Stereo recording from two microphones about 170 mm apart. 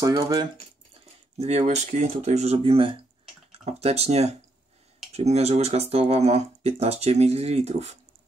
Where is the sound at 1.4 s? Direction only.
40° right (ahead or behind).